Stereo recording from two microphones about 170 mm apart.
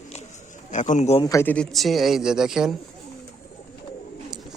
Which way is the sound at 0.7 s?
45° left (ahead or behind).